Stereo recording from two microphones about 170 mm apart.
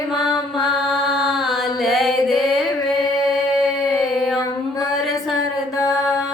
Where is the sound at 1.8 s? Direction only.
Centre (ahead or behind).